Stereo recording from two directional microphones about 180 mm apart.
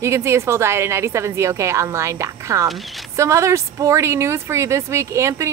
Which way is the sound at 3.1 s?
15° right (ahead or behind).